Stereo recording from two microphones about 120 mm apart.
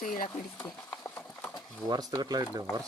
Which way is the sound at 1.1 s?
10° left (ahead or behind).